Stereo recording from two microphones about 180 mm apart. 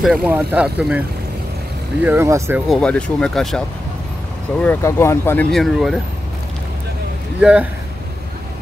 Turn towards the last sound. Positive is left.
turn(degrees=-5)  # may be behind; listen again after turning